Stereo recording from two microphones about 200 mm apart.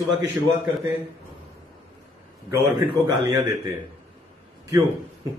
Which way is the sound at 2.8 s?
15° right (ahead or behind).